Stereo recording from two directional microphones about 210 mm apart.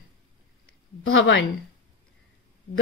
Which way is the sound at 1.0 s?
65° left (ahead or behind).